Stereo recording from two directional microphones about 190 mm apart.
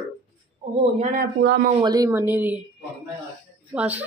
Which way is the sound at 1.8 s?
20° right (ahead or behind).